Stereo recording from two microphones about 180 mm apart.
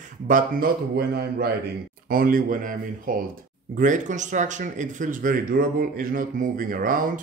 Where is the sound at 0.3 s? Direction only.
55° right (ahead or behind).